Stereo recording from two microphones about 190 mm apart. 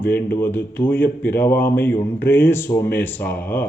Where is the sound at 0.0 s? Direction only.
10° left (ahead or behind).